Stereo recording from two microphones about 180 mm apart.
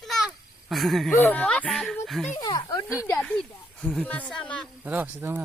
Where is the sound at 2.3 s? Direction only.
20° left (ahead or behind).